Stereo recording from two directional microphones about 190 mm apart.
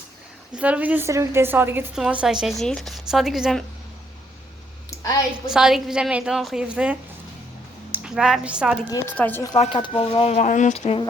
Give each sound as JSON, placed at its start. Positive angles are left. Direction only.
{"t": 0.5, "sound": "a woman's voice", "side_deg": -10}
{"t": 4.9, "sound": "a sound", "side_deg": 15}
{"t": 5.5, "sound": "a woman's voice", "side_deg": -5}
{"t": 8.9, "sound": "speech", "side_deg": 20}
{"t": 9.6, "sound": "speech", "side_deg": 30}